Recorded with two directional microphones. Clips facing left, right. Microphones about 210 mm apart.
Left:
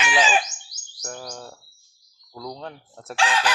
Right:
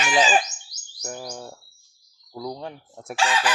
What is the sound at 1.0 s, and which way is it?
Bird, 10° right (ahead or behind).